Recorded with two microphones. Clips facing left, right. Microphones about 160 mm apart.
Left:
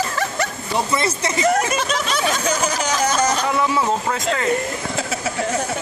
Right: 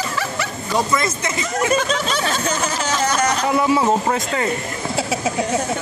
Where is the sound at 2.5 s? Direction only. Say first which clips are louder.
Left 1 dB; 15° left (ahead or behind).